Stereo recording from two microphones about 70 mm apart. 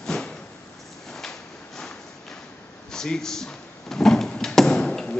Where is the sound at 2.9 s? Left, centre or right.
Centre.